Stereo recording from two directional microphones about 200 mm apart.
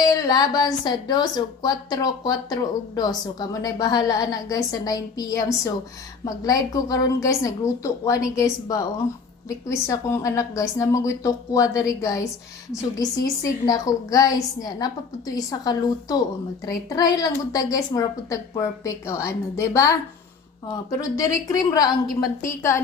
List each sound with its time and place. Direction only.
0.0 s a woman's voice: 20° left (ahead or behind)
21.2 s a woman's voice: 15° left (ahead or behind)